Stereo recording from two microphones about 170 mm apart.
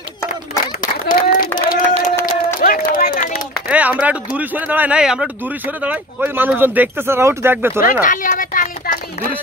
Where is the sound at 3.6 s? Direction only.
10° right (ahead or behind).